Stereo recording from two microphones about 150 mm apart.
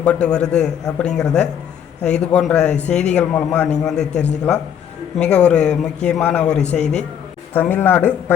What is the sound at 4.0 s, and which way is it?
Speech, 50° left (ahead or behind).